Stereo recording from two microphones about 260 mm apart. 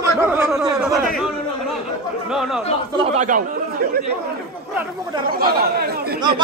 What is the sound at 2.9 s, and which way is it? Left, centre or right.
Speech, right.